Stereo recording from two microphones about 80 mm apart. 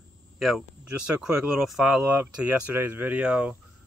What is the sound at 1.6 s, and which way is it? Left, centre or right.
Speech, centre.